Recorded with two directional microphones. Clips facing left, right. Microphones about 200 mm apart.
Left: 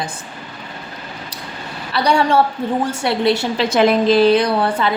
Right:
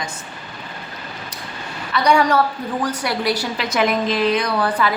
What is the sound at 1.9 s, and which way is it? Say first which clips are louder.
A woman's voice: left 1 dB; 30° left (ahead or behind).